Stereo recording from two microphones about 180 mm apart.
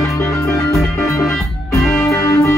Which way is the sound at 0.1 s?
15° left (ahead or behind).